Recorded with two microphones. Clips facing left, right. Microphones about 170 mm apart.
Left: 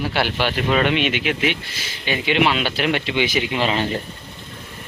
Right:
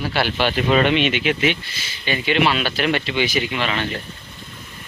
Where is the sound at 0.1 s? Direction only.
15° left (ahead or behind).